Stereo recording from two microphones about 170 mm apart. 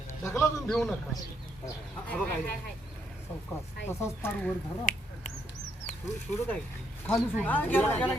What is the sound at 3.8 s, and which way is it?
Speech, 15° left (ahead or behind).